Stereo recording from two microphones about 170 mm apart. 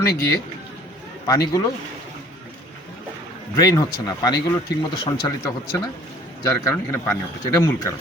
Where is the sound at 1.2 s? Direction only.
20° left (ahead or behind).